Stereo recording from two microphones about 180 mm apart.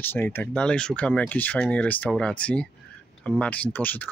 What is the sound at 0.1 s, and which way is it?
Speech, 10° left (ahead or behind).